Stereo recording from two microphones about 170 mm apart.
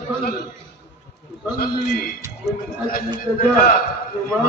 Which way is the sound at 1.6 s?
60° left (ahead or behind).